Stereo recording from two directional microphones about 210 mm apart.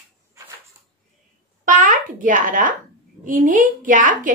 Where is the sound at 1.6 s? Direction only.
40° right (ahead or behind).